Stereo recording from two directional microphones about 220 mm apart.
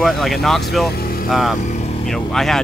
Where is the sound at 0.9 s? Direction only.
45° left (ahead or behind).